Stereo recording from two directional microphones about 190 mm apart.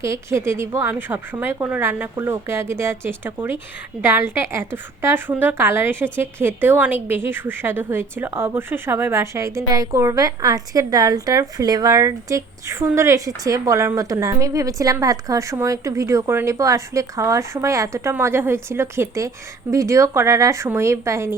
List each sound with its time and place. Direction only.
0.0 s a woman's voice: 15° right (ahead or behind)